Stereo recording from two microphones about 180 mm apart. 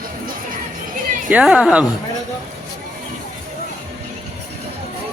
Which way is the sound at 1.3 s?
5° right (ahead or behind).